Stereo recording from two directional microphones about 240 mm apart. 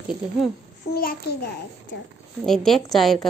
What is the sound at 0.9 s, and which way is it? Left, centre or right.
Child singing, left.